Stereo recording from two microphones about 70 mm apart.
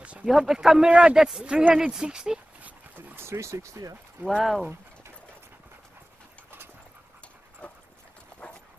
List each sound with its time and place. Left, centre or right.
0.0 s a sound: centre
0.3 s speech: centre
3.2 s speech: right
4.4 s speech: centre
7.6 s clip-clop: centre